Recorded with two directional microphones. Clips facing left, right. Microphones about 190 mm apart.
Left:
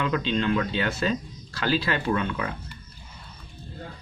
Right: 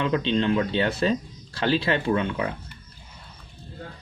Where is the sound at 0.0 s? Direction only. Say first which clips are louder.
Right 2 dB; 25° right (ahead or behind).